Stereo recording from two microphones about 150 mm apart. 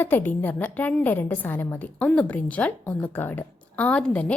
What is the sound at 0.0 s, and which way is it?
A woman's voice, 10° left (ahead or behind).